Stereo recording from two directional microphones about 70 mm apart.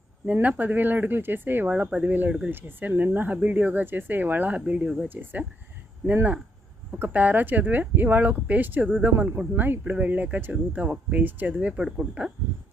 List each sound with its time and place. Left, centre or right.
0.4 s speech: right
1.7 s speech: centre
5.0 s speech: right
7.0 s speech: right
11.8 s speech: centre